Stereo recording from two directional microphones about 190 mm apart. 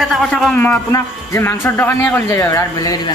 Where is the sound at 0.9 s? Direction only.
15° left (ahead or behind).